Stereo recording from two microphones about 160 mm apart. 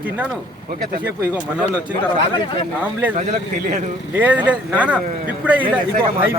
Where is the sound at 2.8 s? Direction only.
10° right (ahead or behind).